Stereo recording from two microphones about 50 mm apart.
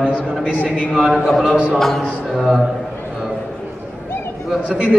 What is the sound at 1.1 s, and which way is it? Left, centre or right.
Speech, centre.